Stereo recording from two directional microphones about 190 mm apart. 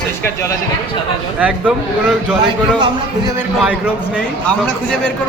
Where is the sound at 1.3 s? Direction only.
5° right (ahead or behind).